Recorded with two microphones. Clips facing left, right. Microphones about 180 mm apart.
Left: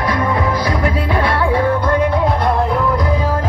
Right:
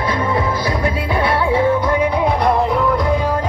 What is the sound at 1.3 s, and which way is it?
Music, 15° right (ahead or behind).